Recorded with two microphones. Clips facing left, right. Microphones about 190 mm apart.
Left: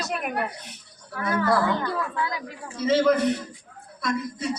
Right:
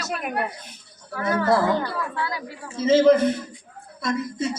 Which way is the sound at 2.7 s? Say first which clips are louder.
Right 4 dB; 25° right (ahead or behind).